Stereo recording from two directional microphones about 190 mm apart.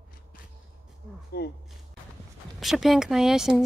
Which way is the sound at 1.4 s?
55° left (ahead or behind).